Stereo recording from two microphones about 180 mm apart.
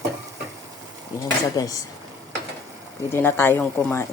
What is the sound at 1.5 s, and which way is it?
Speech, 20° left (ahead or behind).